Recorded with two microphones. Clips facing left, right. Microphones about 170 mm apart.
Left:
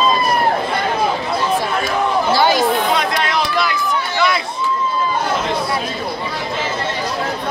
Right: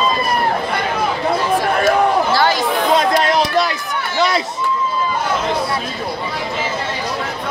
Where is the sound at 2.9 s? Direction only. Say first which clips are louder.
Right 4 dB; 40° right (ahead or behind).